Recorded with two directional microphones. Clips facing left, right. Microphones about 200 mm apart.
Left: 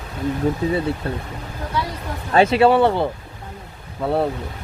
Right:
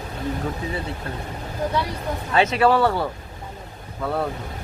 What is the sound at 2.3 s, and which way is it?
A man's voice, 35° left (ahead or behind).